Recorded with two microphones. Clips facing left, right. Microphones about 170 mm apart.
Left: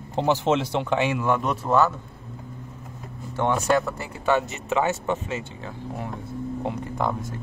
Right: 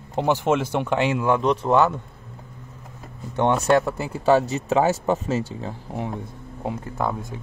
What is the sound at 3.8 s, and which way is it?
Speech, 35° right (ahead or behind).